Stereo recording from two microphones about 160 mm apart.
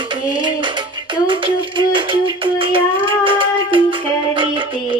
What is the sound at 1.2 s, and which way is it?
Child singing, 30° right (ahead or behind).